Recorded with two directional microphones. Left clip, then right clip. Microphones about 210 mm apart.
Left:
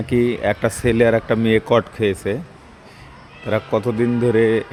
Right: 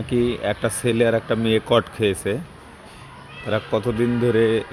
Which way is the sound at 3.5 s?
20° left (ahead or behind).